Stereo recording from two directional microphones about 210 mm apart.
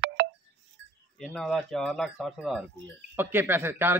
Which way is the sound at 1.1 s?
Centre (ahead or behind).